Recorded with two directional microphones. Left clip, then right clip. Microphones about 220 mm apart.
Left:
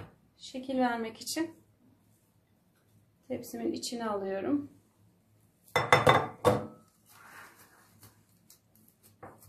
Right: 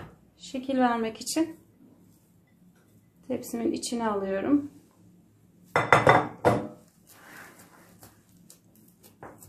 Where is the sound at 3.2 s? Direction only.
20° right (ahead or behind).